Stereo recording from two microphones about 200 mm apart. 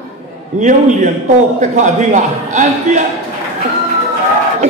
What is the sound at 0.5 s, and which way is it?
A man's voice, 40° right (ahead or behind).